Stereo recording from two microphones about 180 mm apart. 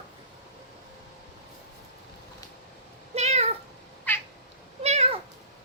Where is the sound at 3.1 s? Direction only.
35° right (ahead or behind).